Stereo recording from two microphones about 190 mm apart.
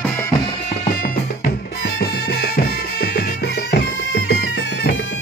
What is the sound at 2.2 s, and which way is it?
Music, 55° left (ahead or behind).